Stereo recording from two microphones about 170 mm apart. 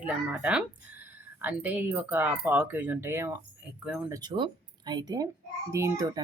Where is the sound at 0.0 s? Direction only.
10° right (ahead or behind).